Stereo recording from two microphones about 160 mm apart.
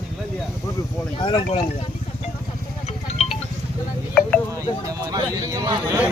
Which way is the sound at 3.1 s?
40° left (ahead or behind).